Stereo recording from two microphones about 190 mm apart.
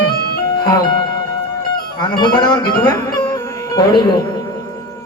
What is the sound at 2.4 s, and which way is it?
Speech, 20° left (ahead or behind).